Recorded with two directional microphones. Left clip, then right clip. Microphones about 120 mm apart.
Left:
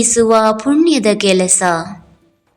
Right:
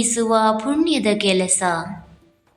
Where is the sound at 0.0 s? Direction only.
45° left (ahead or behind).